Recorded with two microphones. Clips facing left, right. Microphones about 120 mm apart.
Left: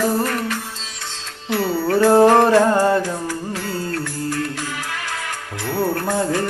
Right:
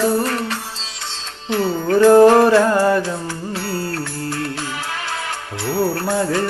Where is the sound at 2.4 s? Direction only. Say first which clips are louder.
Right 1 dB; 25° left (ahead or behind).